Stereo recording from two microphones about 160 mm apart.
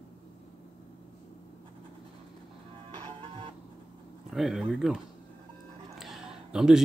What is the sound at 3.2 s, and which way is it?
Music, 35° right (ahead or behind).